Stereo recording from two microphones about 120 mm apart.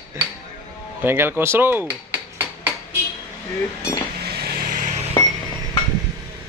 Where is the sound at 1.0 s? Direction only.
20° right (ahead or behind).